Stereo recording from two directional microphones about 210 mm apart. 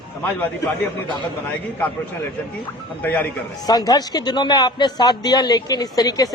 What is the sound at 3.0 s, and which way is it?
A man's voice, 10° left (ahead or behind).